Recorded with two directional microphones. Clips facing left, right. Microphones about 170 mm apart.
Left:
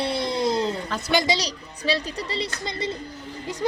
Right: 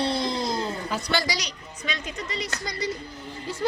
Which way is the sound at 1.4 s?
35° left (ahead or behind).